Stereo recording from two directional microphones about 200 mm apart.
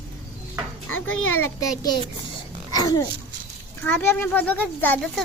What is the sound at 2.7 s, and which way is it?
A child's voice, 20° left (ahead or behind).